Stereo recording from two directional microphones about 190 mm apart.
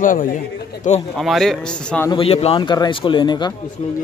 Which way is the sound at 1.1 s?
Centre (ahead or behind).